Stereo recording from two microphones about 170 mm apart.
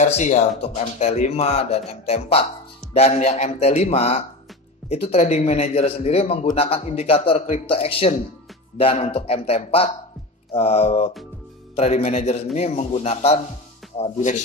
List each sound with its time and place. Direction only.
0.0 s a man's voice: 45° left (ahead or behind)